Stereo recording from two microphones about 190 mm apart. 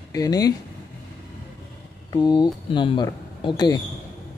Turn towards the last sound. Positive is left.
turn(degrees=20)  # may be behind; listen again after turning